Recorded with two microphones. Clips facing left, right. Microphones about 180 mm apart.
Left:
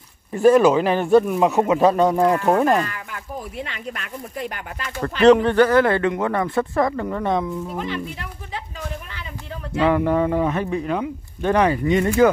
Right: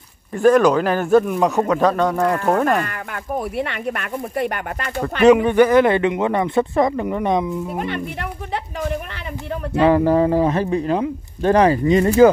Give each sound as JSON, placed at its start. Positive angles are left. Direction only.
{"t": 0.4, "sound": "speech", "side_deg": 5}
{"t": 2.8, "sound": "speech", "side_deg": -55}
{"t": 5.2, "sound": "speech", "side_deg": -10}
{"t": 7.7, "sound": "speech", "side_deg": -60}
{"t": 9.8, "sound": "speech", "side_deg": -35}